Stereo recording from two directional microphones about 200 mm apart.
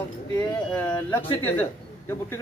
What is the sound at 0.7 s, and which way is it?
Speech, 10° left (ahead or behind).